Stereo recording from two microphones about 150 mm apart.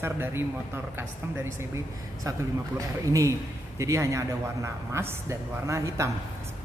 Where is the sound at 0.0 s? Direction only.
15° right (ahead or behind).